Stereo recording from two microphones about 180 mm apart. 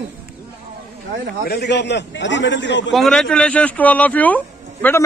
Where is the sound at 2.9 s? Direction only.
Centre (ahead or behind).